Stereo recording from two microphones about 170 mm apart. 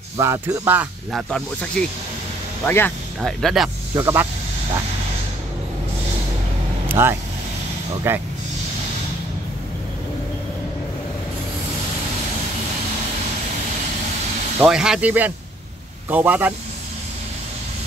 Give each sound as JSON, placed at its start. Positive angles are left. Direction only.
{"t": 0.2, "sound": "speech", "side_deg": -15}
{"t": 1.1, "sound": "speech", "side_deg": 5}
{"t": 3.2, "sound": "speech", "side_deg": 0}
{"t": 3.9, "sound": "speech", "side_deg": -15}
{"t": 6.9, "sound": "vehicle", "side_deg": -15}
{"t": 8.1, "sound": "speech", "side_deg": -15}
{"t": 14.6, "sound": "speech", "side_deg": -5}